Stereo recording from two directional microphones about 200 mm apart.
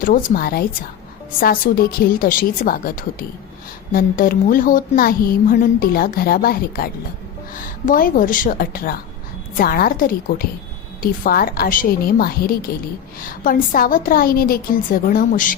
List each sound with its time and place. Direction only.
0.0 s a woman's voice: 45° left (ahead or behind)